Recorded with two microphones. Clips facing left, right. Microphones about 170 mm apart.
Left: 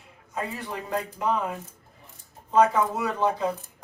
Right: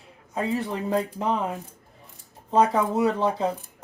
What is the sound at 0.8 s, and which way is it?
Speech, 30° right (ahead or behind).